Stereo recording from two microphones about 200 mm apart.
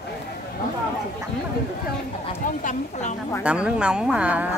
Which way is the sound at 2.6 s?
35° left (ahead or behind).